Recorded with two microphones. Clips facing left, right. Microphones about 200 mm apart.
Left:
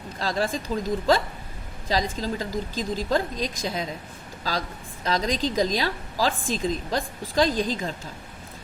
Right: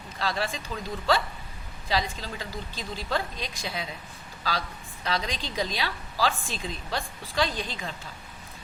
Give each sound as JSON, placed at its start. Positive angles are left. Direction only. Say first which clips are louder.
{"t": 0.2, "sound": "a woman's voice", "louder": "left 4 dB", "side_deg": 40}
{"t": 5.0, "sound": "a woman's voice", "louder": "left 6 dB", "side_deg": 45}